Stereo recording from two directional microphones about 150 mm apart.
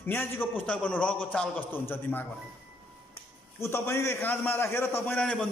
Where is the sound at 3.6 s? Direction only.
20° left (ahead or behind).